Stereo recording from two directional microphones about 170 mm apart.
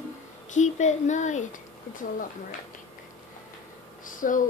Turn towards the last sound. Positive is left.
turn(degrees=50)  # may be behind; listen again after turning